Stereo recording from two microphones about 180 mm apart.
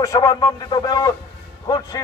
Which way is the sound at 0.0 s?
20° left (ahead or behind).